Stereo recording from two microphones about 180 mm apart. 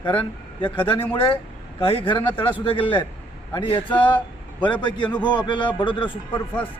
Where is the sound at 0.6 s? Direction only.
30° left (ahead or behind).